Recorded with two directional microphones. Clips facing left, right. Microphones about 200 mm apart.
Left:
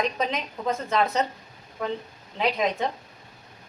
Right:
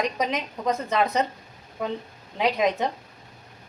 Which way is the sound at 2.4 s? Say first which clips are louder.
Right 2 dB; 15° right (ahead or behind).